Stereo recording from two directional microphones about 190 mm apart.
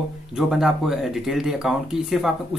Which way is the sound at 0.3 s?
Centre (ahead or behind).